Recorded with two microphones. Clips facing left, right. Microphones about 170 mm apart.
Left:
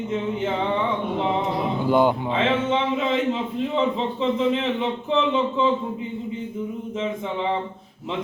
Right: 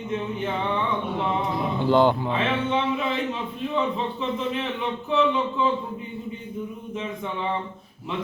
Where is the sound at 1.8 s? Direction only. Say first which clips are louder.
Even; 10° left (ahead or behind).